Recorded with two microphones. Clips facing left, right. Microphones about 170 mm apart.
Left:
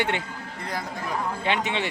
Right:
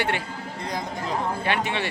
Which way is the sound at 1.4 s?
20° left (ahead or behind).